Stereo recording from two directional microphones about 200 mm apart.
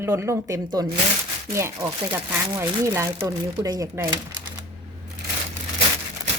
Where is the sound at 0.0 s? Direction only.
15° right (ahead or behind).